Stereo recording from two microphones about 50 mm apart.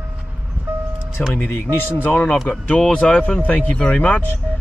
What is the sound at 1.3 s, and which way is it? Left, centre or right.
Speech, left.